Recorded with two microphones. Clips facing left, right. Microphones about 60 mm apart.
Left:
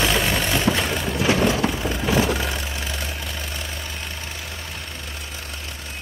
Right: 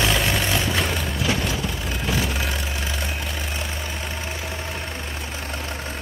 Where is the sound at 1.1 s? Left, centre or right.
Left.